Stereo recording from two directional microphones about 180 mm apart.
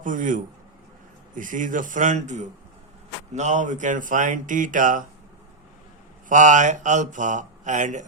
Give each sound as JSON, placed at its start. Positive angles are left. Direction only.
{"t": 0.0, "sound": "speech", "side_deg": -45}
{"t": 6.2, "sound": "speech", "side_deg": -45}